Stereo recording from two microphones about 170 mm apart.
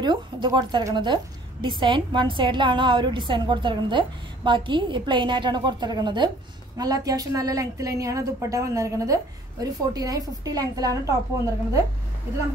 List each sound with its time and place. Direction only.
0.0 s a woman's voice: 25° right (ahead or behind)